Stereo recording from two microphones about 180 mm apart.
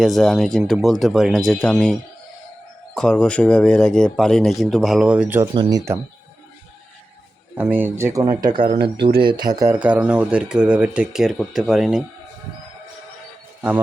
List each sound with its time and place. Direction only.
0.0 s speech: centre (ahead or behind); by 6.0 s 20° right (ahead or behind)
7.5 s speech: 10° right (ahead or behind)
9.7 s speech: 10° right (ahead or behind)
13.6 s speech: 10° right (ahead or behind)